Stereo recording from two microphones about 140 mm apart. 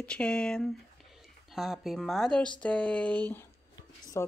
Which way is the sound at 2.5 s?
10° left (ahead or behind).